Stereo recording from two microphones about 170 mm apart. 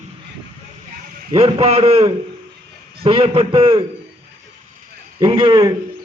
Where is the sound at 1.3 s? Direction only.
35° right (ahead or behind).